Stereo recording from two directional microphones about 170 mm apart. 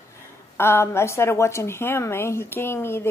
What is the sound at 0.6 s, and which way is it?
A woman's voice, 15° left (ahead or behind).